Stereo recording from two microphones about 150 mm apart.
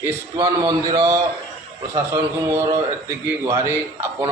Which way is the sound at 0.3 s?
30° right (ahead or behind).